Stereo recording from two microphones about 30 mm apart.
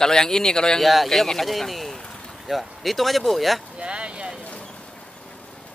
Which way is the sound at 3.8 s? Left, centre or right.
Right.